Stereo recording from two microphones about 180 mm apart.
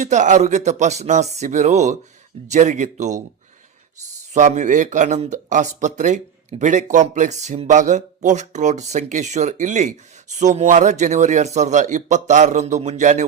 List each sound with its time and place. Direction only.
0.0 s a man's voice: 40° right (ahead or behind)
4.4 s a man's voice: 40° right (ahead or behind)